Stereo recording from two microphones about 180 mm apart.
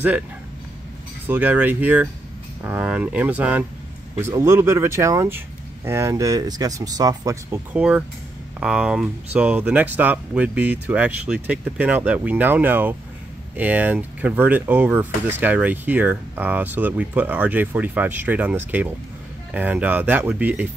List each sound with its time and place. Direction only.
1.2 s speech: 10° right (ahead or behind)